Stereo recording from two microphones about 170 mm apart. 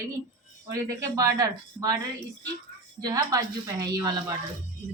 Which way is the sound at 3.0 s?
20° right (ahead or behind).